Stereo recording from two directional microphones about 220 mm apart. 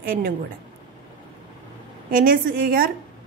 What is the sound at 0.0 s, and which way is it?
Speech, 40° right (ahead or behind).